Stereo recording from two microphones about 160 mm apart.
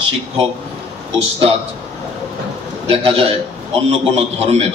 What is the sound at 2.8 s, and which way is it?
A man's voice, 35° right (ahead or behind).